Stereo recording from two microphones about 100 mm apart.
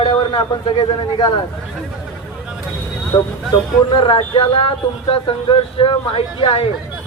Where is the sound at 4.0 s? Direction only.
60° left (ahead or behind).